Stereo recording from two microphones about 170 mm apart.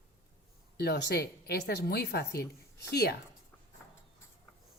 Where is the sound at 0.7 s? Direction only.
70° left (ahead or behind).